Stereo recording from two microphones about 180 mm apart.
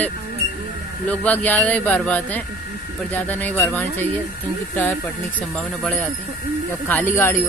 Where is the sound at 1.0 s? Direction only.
10° left (ahead or behind).